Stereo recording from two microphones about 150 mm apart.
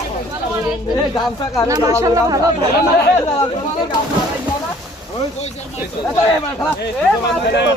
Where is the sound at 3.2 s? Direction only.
25° left (ahead or behind).